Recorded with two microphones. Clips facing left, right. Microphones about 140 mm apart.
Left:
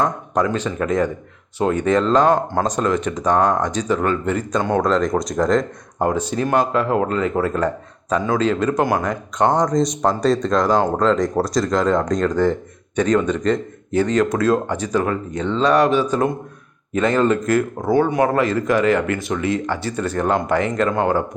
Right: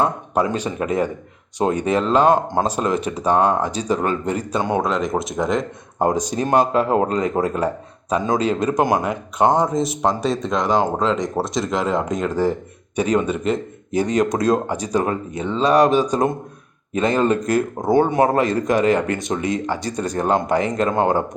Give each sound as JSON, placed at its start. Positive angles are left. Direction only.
{"t": 0.5, "sound": "speech", "side_deg": -10}
{"t": 6.0, "sound": "speech", "side_deg": -15}
{"t": 6.9, "sound": "speech", "side_deg": -30}
{"t": 7.2, "sound": "speech", "side_deg": -15}
{"t": 10.7, "sound": "speech", "side_deg": -20}
{"t": 11.0, "sound": "speech", "side_deg": 0}
{"t": 20.1, "sound": "speech", "side_deg": -25}
{"t": 20.5, "sound": "speech", "side_deg": -15}